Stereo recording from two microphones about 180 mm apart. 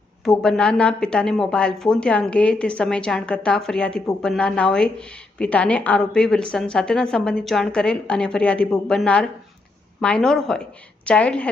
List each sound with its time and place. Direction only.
0.3 s a woman's voice: 5° left (ahead or behind)